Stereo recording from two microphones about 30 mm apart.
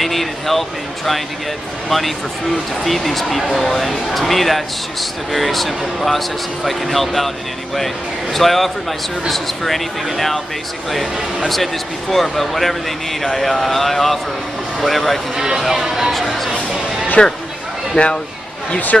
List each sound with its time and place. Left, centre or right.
0.0 s speech: centre
10.0 s speech: centre
11.4 s speech: centre
15.3 s speech: centre
16.1 s speech: centre
17.2 s speech: left